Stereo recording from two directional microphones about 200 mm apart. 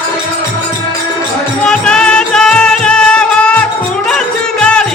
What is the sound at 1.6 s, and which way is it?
Music, 5° left (ahead or behind).